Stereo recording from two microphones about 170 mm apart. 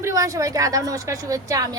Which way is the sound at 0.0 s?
20° right (ahead or behind).